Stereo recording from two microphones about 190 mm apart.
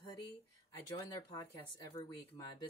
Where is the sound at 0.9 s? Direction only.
25° left (ahead or behind).